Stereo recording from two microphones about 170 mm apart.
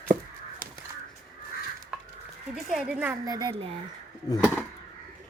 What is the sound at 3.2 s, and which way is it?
Speech, 20° right (ahead or behind).